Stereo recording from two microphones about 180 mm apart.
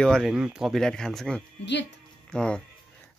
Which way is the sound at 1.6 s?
75° left (ahead or behind).